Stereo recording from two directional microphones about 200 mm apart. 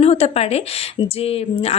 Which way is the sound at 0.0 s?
30° left (ahead or behind).